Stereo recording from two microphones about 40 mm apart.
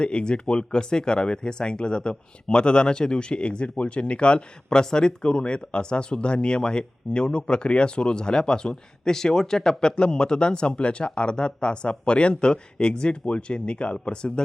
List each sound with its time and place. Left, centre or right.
0.0 s speech: left